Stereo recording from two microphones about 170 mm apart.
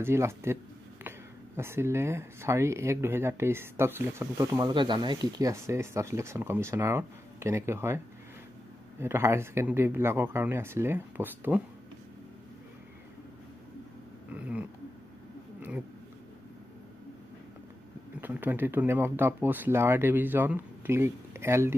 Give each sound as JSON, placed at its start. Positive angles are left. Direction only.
{"t": 0.0, "sound": "speech", "side_deg": -15}
{"t": 1.6, "sound": "speech", "side_deg": -15}
{"t": 9.0, "sound": "speech", "side_deg": -15}
{"t": 14.3, "sound": "a sound", "side_deg": -5}
{"t": 18.2, "sound": "speech", "side_deg": -10}